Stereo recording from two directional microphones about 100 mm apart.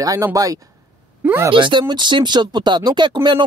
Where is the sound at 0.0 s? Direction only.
35° right (ahead or behind).